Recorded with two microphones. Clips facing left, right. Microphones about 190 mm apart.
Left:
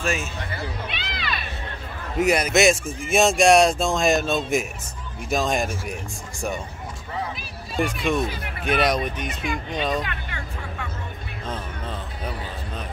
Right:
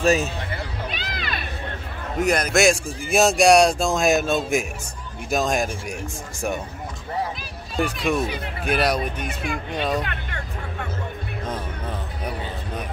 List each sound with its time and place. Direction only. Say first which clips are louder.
0.0 s speech: right 7 dB; 40° right (ahead or behind)
0.8 s music: right 1 dB; 40° right (ahead or behind)
2.1 s speech: left 1 dB; 5° left (ahead or behind)
7.7 s speech: even; centre (ahead or behind)
10.0 s music: right 1 dB; 50° right (ahead or behind)